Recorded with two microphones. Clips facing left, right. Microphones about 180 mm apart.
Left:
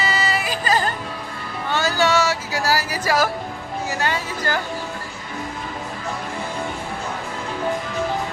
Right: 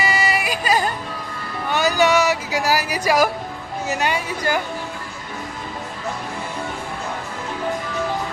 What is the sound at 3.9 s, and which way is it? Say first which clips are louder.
Speech: right 3 dB; 15° right (ahead or behind).